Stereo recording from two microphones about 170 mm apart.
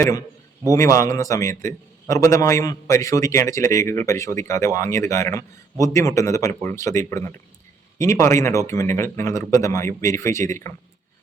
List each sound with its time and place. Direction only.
0.0 s a man's voice: 20° left (ahead or behind)